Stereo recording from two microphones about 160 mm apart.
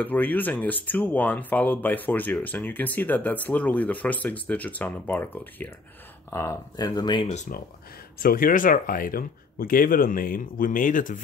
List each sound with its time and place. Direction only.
0.0 s speech: 10° left (ahead or behind); by 7.2 s 25° left (ahead or behind)
7.5 s speech: 60° left (ahead or behind)